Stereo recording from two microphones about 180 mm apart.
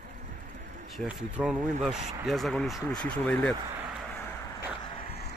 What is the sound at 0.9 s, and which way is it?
A man's voice, 5° right (ahead or behind).